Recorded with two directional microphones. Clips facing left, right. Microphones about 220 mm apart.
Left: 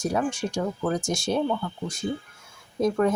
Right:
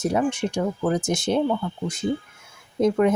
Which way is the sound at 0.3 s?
20° right (ahead or behind).